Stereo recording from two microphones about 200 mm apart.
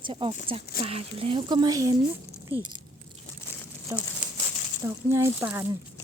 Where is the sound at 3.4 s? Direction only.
10° left (ahead or behind).